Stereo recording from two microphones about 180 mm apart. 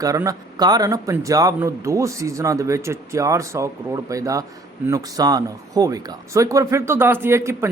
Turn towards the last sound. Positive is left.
turn(degrees=-15)  # may be behind; listen again after turning